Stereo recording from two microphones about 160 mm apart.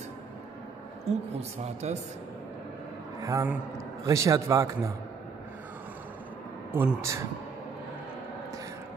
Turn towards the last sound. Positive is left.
turn(degrees=-15)  # may be behind; listen again after turning